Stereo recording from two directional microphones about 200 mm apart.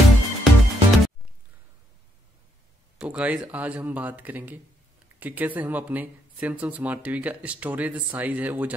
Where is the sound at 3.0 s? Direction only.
5° right (ahead or behind).